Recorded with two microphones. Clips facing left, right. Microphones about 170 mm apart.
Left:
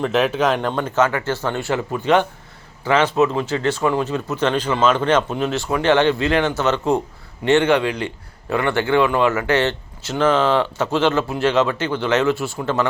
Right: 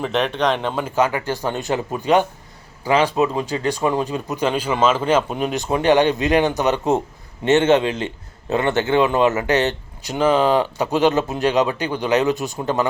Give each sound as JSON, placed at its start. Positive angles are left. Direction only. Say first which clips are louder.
{"t": 0.0, "sound": "a man's voice", "louder": "left 2 dB", "side_deg": 5}